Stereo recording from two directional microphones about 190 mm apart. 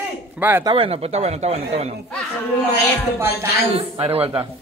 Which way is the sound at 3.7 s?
30° right (ahead or behind).